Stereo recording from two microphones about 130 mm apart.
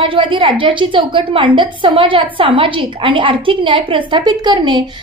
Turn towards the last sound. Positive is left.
turn(degrees=-35)  # may be behind; listen again after turning